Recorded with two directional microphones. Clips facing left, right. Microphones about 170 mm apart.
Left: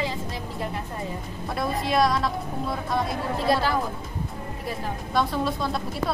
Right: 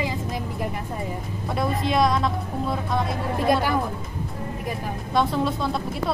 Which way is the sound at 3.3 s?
15° right (ahead or behind).